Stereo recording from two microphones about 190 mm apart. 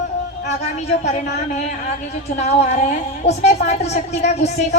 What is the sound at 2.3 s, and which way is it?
A woman's voice, 35° left (ahead or behind).